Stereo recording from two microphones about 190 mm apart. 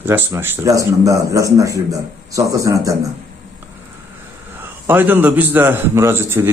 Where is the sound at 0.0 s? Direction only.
10° right (ahead or behind).